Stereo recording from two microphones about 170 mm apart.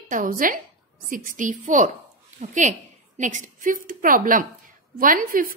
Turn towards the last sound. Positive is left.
turn(degrees=-55)  # may be behind; listen again after turning